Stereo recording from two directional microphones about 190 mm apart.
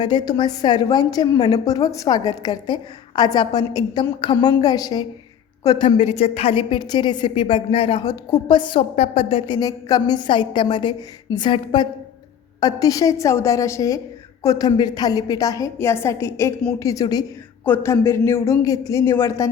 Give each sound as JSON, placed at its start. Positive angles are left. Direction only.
{"t": 0.0, "sound": "a woman's voice", "side_deg": 25}
{"t": 6.0, "sound": "a woman's voice", "side_deg": 35}